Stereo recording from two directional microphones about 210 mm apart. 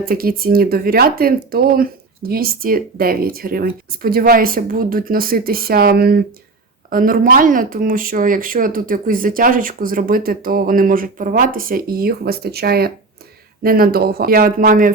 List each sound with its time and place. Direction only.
0.0 s speech: 45° right (ahead or behind)